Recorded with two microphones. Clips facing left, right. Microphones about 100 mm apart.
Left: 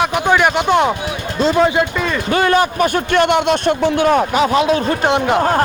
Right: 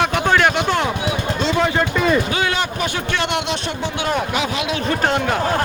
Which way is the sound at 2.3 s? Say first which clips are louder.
Left 7 dB; 50° left (ahead or behind).